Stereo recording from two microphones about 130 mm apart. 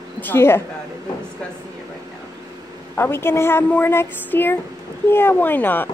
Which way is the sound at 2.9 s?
20° left (ahead or behind).